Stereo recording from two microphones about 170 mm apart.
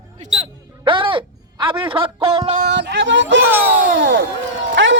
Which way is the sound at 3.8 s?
90° right.